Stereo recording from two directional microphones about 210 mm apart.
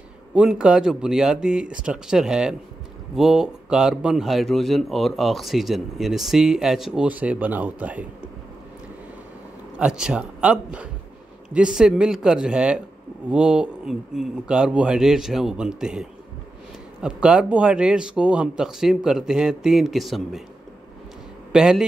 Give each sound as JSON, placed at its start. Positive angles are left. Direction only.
{"t": 0.3, "sound": "speech", "side_deg": -5}
{"t": 9.8, "sound": "speech", "side_deg": -5}
{"t": 21.5, "sound": "speech", "side_deg": -5}